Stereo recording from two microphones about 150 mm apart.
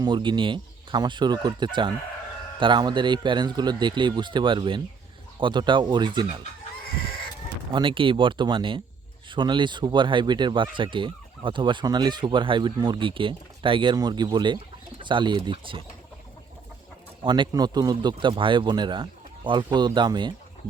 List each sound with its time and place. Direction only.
0.0 s speech: 30° right (ahead or behind)
7.7 s speech: 35° right (ahead or behind)
17.2 s speech: 30° right (ahead or behind)